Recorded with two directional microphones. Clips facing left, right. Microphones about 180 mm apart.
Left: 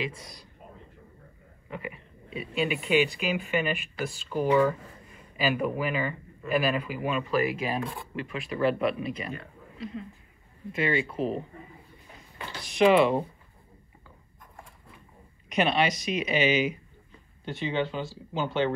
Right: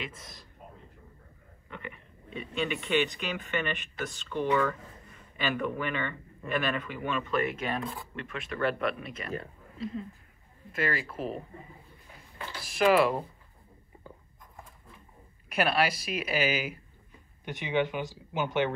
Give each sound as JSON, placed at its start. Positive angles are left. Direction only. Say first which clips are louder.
{"t": 0.0, "sound": "speech", "louder": "left 7 dB", "side_deg": 0}
{"t": 1.7, "sound": "a sound", "louder": "left 5 dB", "side_deg": 5}
{"t": 2.3, "sound": "speech", "louder": "left 3 dB", "side_deg": 5}
{"t": 4.3, "sound": "speech", "louder": "left 3 dB", "side_deg": 35}
{"t": 5.5, "sound": "speech", "louder": "left 3 dB", "side_deg": 5}
{"t": 10.7, "sound": "speech", "louder": "left 4 dB", "side_deg": 0}
{"t": 12.6, "sound": "speech", "louder": "left 3 dB", "side_deg": 0}
{"t": 15.5, "sound": "speech", "louder": "left 2 dB", "side_deg": -5}
{"t": 17.5, "sound": "speech", "louder": "even", "side_deg": -15}